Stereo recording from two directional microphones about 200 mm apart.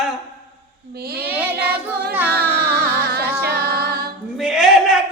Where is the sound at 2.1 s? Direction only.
10° right (ahead or behind).